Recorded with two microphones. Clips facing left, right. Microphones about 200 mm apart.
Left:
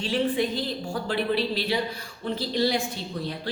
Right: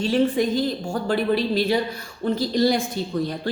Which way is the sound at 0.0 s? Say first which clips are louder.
Right 5 dB; 45° right (ahead or behind).